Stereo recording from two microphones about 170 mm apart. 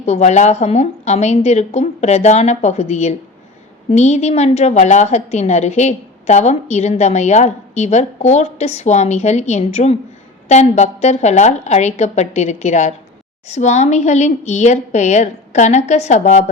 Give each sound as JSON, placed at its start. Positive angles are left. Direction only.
{"t": 0.0, "sound": "a woman's voice", "side_deg": 40}